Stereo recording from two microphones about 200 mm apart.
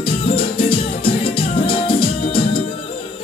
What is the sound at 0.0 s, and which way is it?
Music, 25° left (ahead or behind).